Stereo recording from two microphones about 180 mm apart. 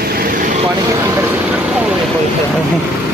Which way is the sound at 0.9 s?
15° right (ahead or behind).